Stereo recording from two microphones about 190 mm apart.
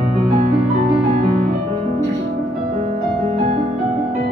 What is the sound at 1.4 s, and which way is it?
Music, 35° right (ahead or behind).